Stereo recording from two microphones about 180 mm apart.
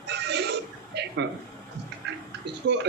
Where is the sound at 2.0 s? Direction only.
70° right (ahead or behind).